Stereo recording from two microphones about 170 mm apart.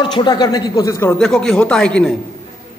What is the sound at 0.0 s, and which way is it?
Speech, 30° left (ahead or behind).